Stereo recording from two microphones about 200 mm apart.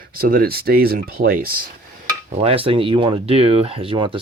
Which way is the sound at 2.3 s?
30° right (ahead or behind).